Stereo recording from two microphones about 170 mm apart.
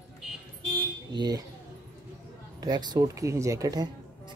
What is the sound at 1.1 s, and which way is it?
Speech, 25° right (ahead or behind).